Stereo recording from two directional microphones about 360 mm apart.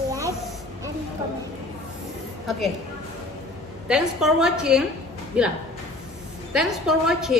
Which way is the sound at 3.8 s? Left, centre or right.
Centre.